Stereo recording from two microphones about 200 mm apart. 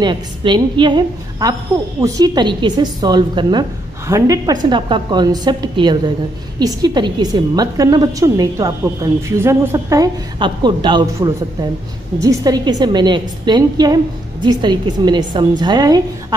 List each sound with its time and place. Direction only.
0.0 s a woman's voice: 25° right (ahead or behind)